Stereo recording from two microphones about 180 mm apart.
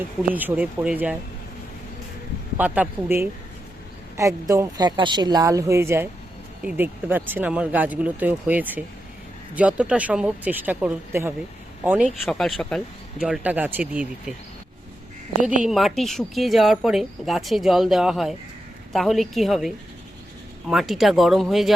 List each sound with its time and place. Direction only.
0.2 s speech: 10° right (ahead or behind)
2.6 s speech: 10° right (ahead or behind)
12.2 s speech: centre (ahead or behind)
15.6 s speech: centre (ahead or behind)